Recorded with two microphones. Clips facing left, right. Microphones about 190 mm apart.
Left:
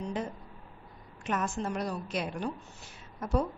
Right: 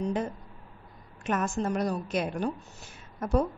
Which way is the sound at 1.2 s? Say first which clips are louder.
Right 4 dB; 45° right (ahead or behind).